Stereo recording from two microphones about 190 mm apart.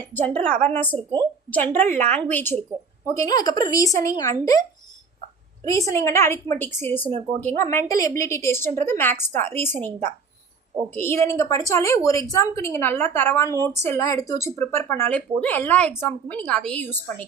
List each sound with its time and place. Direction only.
0.1 s a woman's voice: 10° left (ahead or behind)
5.6 s a woman's voice: 15° left (ahead or behind)
10.9 s a woman's voice: 15° left (ahead or behind)